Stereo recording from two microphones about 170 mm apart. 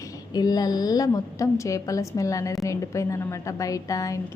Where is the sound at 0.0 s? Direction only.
20° left (ahead or behind).